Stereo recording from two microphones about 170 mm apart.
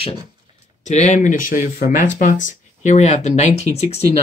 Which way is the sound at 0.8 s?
45° left (ahead or behind).